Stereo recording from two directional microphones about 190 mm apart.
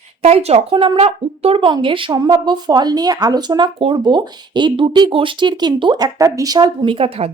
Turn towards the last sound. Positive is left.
turn(degrees=-30)  # may be behind; listen again after turning